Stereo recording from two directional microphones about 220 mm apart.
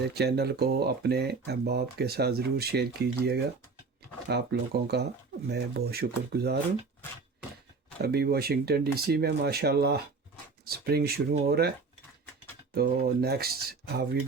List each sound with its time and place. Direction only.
0.1 s speech: 45° right (ahead or behind)
8.0 s speech: 45° right (ahead or behind)
12.7 s speech: 45° right (ahead or behind)